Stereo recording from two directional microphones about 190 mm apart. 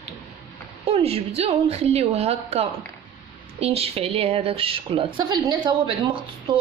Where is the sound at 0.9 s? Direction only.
30° right (ahead or behind).